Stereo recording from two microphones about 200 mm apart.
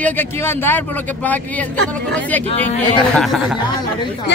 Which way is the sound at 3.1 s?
Centre (ahead or behind).